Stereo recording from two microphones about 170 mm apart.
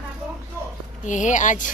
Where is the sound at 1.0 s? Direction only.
45° left (ahead or behind).